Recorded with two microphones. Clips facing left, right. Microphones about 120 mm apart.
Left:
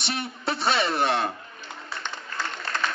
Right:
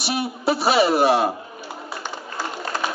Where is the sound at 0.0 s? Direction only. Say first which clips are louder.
Right 7 dB; 5° right (ahead or behind).